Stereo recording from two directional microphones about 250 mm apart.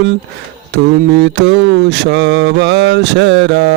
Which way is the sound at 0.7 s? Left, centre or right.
Right.